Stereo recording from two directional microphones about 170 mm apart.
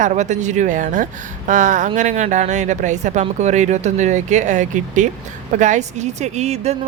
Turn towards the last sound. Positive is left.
turn(degrees=-40)  # may be behind; listen again after turning